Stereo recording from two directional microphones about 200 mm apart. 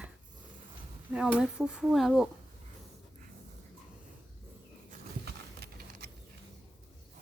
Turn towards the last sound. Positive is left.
turn(degrees=-55)  # may be behind; listen again after turning